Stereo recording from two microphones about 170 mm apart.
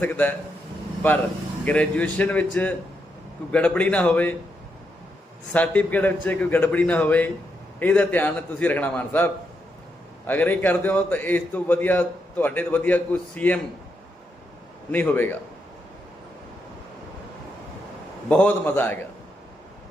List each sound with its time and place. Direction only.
0.0 s a man's voice: 10° left (ahead or behind)
1.6 s a man's voice: 5° left (ahead or behind)
5.5 s a man's voice: 10° left (ahead or behind)
14.9 s a man's voice: 10° left (ahead or behind)
18.3 s a man's voice: 10° left (ahead or behind)